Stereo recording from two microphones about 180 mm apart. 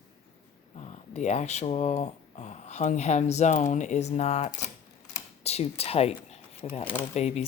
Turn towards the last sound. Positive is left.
turn(degrees=35)  # may be behind; listen again after turning